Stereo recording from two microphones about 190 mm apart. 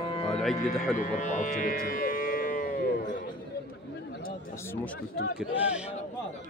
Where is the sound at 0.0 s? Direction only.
30° left (ahead or behind).